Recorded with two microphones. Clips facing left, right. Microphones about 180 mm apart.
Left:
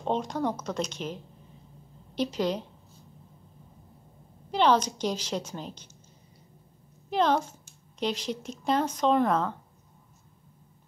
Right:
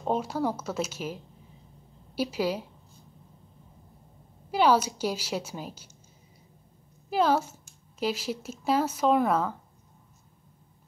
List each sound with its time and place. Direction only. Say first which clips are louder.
0.0 s a woman's voice: right 1 dB; 5° right (ahead or behind)
4.5 s a woman's voice: right 1 dB; 10° right (ahead or behind)
7.1 s speech: right 1 dB; 5° right (ahead or behind)